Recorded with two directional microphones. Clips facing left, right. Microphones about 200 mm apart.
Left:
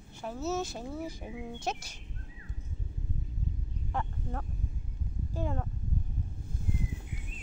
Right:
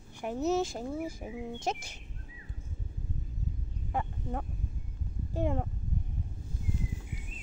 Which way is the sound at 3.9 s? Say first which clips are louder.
Right 2 dB; 15° right (ahead or behind).